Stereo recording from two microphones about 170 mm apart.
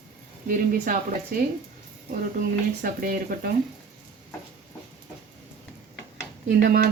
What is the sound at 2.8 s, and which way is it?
Speech, 60° right (ahead or behind).